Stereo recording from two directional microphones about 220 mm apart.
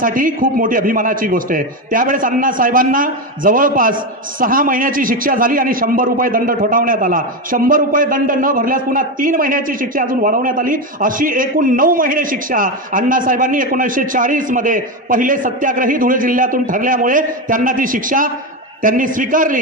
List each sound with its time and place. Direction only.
0.0 s a man's voice: 40° right (ahead or behind)